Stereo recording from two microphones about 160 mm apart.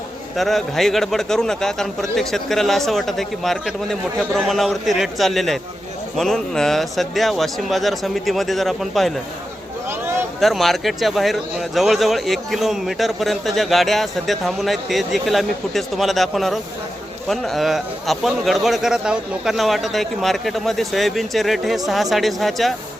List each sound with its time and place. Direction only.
0.3 s speech: centre (ahead or behind)
10.4 s speech: centre (ahead or behind)